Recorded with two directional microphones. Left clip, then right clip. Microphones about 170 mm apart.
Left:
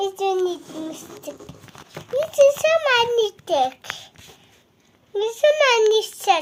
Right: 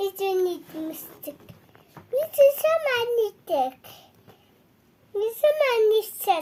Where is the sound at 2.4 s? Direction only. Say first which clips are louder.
Left 4 dB; 25° right (ahead or behind).